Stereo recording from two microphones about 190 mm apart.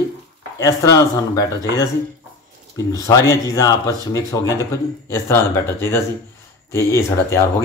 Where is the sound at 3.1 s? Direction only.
15° left (ahead or behind).